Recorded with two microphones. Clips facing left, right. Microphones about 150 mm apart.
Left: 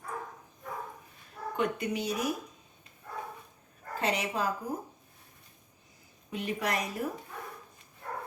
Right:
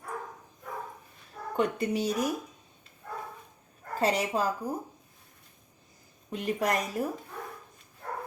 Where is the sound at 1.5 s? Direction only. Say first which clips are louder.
Right 3 dB; 35° right (ahead or behind).